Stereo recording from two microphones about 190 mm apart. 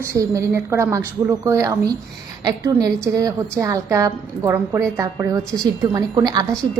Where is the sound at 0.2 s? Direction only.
15° right (ahead or behind).